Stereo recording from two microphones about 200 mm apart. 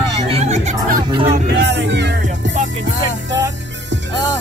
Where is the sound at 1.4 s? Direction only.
60° right (ahead or behind).